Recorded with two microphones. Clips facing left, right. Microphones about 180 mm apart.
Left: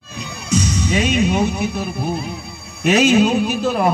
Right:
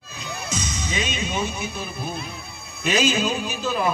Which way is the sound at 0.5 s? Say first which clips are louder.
Left 12 dB; 65° left (ahead or behind).